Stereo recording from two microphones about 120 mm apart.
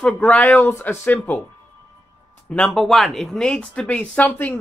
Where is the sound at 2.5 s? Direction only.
5° left (ahead or behind).